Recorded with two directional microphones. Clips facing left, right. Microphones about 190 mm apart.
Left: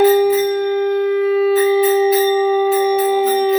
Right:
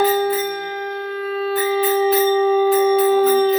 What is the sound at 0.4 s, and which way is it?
Wind instrument, 20° left (ahead or behind).